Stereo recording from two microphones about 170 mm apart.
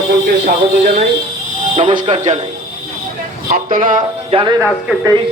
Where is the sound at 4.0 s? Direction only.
30° right (ahead or behind).